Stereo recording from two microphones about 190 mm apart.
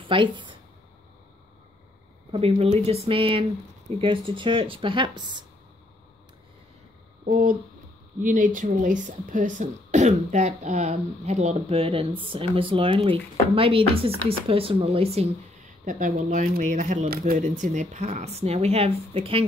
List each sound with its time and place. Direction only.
0.0 s speech: 25° right (ahead or behind)
2.3 s speech: 30° right (ahead or behind)
7.2 s speech: 45° right (ahead or behind)
15.8 s speech: 45° right (ahead or behind)